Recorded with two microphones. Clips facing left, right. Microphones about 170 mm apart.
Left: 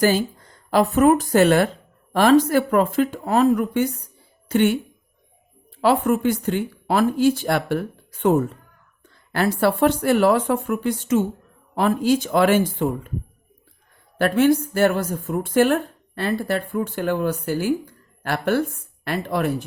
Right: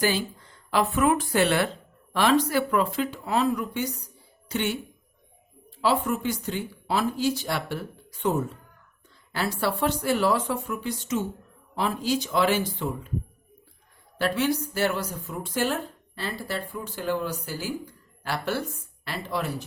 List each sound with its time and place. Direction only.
0.0 s speech: 45° left (ahead or behind)
5.8 s a woman's voice: 55° left (ahead or behind)
14.2 s a woman's voice: 55° left (ahead or behind)